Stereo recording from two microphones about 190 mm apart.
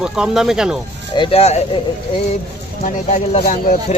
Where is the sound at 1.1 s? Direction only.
25° left (ahead or behind).